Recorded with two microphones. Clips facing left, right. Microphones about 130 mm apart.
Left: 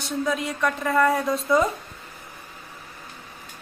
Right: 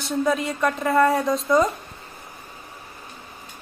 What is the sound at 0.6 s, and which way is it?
Speech, 20° right (ahead or behind).